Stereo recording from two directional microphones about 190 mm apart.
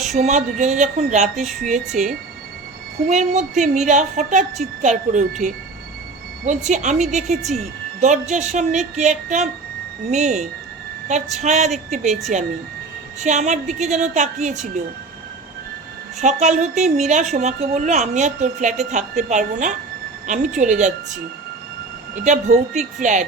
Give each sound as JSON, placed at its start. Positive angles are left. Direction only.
{"t": 0.2, "sound": "a woman's voice", "side_deg": -40}
{"t": 13.1, "sound": "a woman's voice", "side_deg": -40}
{"t": 16.2, "sound": "a woman's voice", "side_deg": -40}
{"t": 22.1, "sound": "a woman's voice", "side_deg": -40}